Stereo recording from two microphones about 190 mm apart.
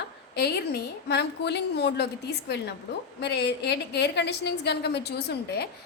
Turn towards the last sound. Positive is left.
turn(degrees=60)  # may be behind; listen again after turning